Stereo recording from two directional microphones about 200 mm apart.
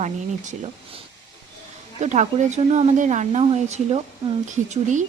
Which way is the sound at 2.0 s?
35° right (ahead or behind).